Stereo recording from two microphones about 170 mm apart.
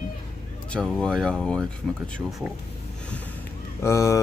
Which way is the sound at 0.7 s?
5° left (ahead or behind).